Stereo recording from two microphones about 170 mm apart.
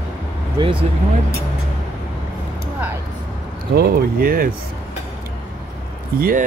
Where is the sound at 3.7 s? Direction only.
60° right (ahead or behind).